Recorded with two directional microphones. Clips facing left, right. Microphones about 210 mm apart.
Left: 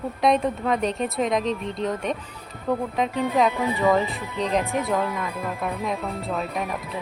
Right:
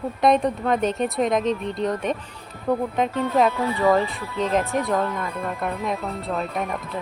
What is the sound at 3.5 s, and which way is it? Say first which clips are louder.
Speech: right 1 dB; 15° left (ahead or behind).